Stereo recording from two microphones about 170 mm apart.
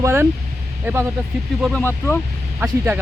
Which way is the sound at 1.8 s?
15° left (ahead or behind).